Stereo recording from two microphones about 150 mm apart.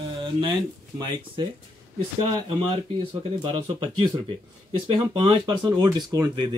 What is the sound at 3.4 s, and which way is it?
Speech, 40° right (ahead or behind).